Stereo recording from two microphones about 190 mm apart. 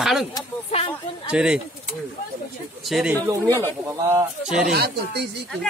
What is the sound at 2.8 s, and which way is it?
Speech, centre (ahead or behind).